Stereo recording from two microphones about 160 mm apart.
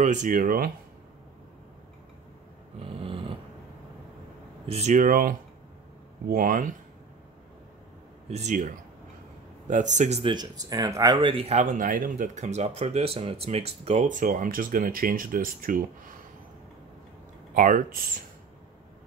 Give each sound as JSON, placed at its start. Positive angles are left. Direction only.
{"t": 0.0, "sound": "speech", "side_deg": -50}
{"t": 2.8, "sound": "dog", "side_deg": -35}
{"t": 4.6, "sound": "speech", "side_deg": -45}
{"t": 8.3, "sound": "speech", "side_deg": -45}
{"t": 10.3, "sound": "speech", "side_deg": -25}
{"t": 17.6, "sound": "speech", "side_deg": -55}